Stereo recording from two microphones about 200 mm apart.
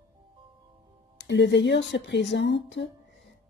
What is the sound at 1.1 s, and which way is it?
A woman's voice, 65° left (ahead or behind).